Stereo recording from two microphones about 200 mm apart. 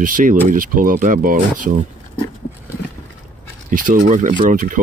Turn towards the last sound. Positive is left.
turn(degrees=-40)  # may be behind; listen again after turning